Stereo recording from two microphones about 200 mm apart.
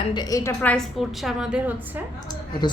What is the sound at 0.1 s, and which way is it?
A woman's voice, 20° left (ahead or behind).